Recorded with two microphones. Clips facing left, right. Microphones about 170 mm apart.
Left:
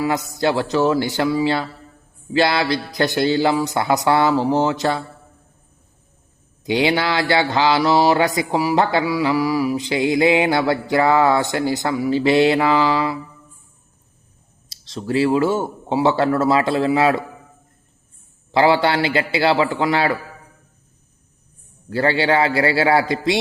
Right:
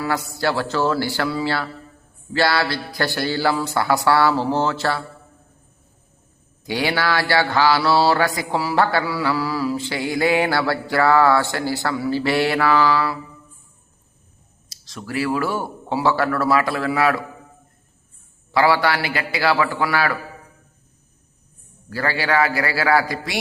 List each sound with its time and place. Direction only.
0.0 s mantra: 20° left (ahead or behind)
6.7 s mantra: 20° left (ahead or behind)
14.7 s mantra: 25° left (ahead or behind)
18.5 s mantra: 25° left (ahead or behind)
21.8 s mantra: 25° left (ahead or behind)